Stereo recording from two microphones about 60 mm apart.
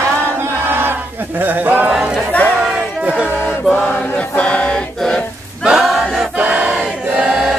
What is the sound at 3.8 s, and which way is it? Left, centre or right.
Choir, left.